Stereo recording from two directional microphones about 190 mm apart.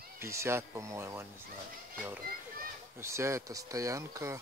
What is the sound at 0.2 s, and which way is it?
Speech, 15° right (ahead or behind).